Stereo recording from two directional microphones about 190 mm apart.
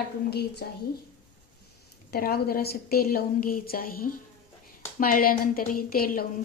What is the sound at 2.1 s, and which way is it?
A woman's voice, 55° left (ahead or behind).